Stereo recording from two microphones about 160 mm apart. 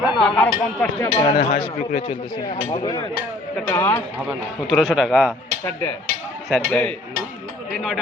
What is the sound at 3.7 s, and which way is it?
Speech, 15° left (ahead or behind).